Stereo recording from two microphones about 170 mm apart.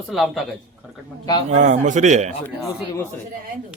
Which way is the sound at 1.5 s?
45° right (ahead or behind).